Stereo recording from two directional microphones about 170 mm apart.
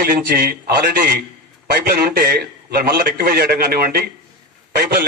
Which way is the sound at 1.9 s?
65° right (ahead or behind).